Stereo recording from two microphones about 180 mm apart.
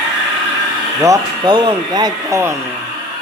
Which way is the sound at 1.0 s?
20° right (ahead or behind).